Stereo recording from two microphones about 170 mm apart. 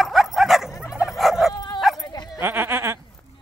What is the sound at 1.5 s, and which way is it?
Dog, 25° left (ahead or behind).